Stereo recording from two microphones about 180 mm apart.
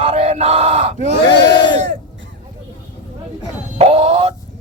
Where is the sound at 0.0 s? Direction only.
35° right (ahead or behind).